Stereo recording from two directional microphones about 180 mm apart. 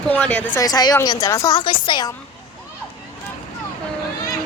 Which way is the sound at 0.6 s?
20° left (ahead or behind).